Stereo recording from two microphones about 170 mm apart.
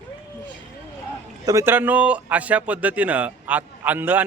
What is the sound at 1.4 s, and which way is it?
A man's voice, 15° right (ahead or behind).